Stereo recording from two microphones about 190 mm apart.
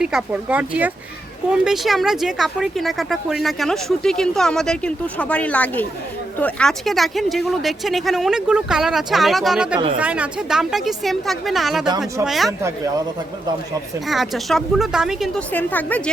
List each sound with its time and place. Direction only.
0.0 s speech: 5° right (ahead or behind)
11.9 s speech: 20° right (ahead or behind)
12.2 s speech: centre (ahead or behind)
12.5 s speech: 15° right (ahead or behind)
14.1 s speech: centre (ahead or behind)